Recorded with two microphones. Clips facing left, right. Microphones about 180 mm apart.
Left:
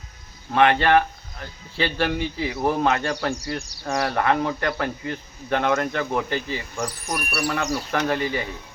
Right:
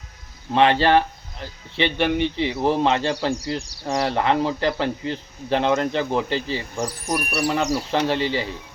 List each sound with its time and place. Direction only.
0.5 s a man's voice: 30° right (ahead or behind)
6.7 s speech: 15° right (ahead or behind)
7.9 s a man's voice: 30° right (ahead or behind)